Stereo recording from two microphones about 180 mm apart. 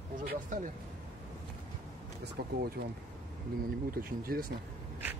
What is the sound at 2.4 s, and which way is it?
Speech, 65° right (ahead or behind).